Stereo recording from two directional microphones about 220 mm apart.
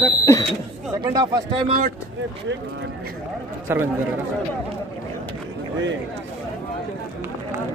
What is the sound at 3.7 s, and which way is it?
Speech, 10° right (ahead or behind).